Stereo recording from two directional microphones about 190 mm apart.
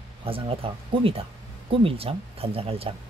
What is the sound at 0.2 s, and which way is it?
Speech, 30° right (ahead or behind).